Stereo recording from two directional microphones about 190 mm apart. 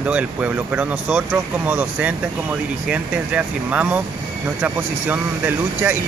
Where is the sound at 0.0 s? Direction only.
5° right (ahead or behind).